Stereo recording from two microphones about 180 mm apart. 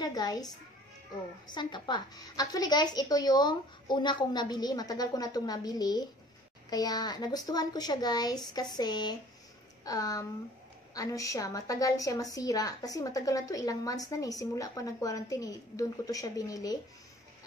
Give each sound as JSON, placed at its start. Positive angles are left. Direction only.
{"t": 0.0, "sound": "a child's voice", "side_deg": 20}
{"t": 1.5, "sound": "a woman's voice", "side_deg": 25}